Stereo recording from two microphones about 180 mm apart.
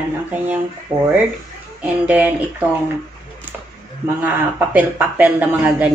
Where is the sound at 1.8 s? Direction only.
10° right (ahead or behind).